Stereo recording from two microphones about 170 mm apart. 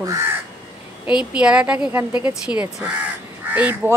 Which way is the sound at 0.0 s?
20° right (ahead or behind).